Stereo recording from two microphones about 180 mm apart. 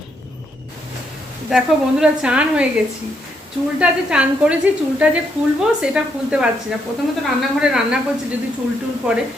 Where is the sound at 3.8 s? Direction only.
5° right (ahead or behind).